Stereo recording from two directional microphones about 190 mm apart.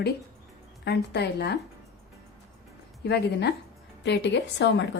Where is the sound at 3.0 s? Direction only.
60° left (ahead or behind).